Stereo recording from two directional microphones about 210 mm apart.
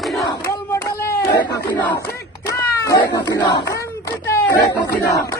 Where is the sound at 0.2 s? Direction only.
15° left (ahead or behind).